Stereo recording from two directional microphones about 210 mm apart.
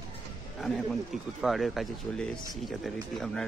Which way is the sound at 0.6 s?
Centre (ahead or behind).